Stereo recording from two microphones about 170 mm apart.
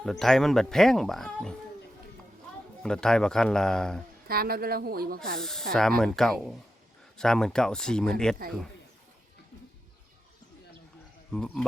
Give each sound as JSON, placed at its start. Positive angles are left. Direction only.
{"t": 0.0, "sound": "speech", "side_deg": 0}
{"t": 2.8, "sound": "speech", "side_deg": 5}
{"t": 4.3, "sound": "a woman's voice", "side_deg": -60}
{"t": 5.4, "sound": "speech", "side_deg": 5}
{"t": 8.4, "sound": "a woman's voice", "side_deg": -60}
{"t": 11.3, "sound": "speech", "side_deg": 5}